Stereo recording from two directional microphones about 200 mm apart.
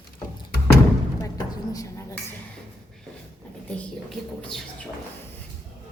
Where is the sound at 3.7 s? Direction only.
Centre (ahead or behind).